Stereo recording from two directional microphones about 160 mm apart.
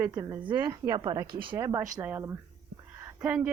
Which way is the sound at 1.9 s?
15° right (ahead or behind).